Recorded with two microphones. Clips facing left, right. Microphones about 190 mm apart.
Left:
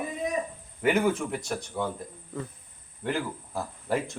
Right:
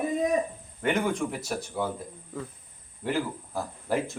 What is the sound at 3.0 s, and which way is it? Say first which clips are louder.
Speech: right 1 dB; centre (ahead or behind).